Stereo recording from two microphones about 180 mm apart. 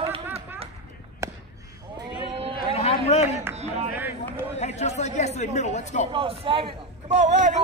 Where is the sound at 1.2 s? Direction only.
15° right (ahead or behind).